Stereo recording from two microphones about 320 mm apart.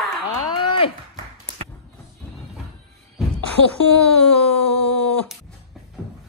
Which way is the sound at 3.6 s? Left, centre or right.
Left.